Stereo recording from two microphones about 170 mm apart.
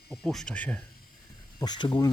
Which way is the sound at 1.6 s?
25° left (ahead or behind).